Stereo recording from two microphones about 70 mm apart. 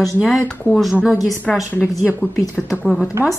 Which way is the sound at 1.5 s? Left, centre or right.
Centre.